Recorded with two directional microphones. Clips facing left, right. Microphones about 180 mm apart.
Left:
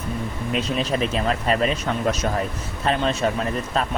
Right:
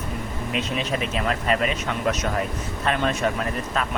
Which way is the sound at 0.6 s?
35° left (ahead or behind).